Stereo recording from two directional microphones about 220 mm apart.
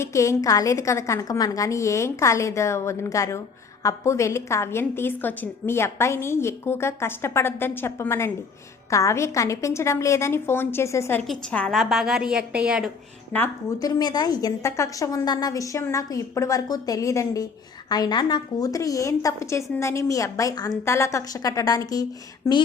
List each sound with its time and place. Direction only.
0.0 s a woman's voice: 15° left (ahead or behind); by 12.9 s 5° right (ahead or behind)
13.3 s a woman's voice: 10° left (ahead or behind)